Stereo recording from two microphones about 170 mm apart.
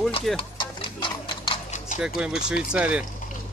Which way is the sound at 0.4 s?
30° left (ahead or behind).